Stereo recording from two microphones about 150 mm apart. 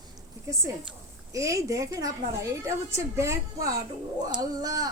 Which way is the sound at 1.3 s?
20° right (ahead or behind).